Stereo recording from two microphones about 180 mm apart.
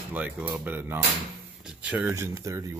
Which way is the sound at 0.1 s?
10° right (ahead or behind).